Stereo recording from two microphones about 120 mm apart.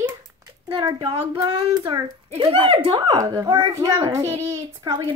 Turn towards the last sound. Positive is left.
turn(degrees=-25)  # may be behind; listen again after turning